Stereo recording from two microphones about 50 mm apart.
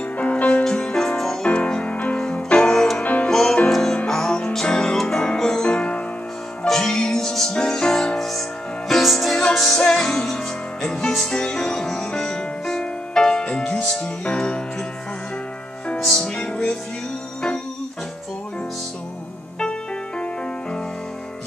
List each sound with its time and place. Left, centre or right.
0.2 s music: left
0.7 s music: centre
1.4 s music: left
3.0 s music: left
3.3 s music: centre
6.6 s music: centre
16.1 s music: centre
16.3 s music: left